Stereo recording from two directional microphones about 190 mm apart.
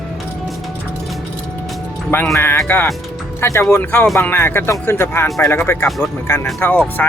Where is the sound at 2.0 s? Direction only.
10° left (ahead or behind).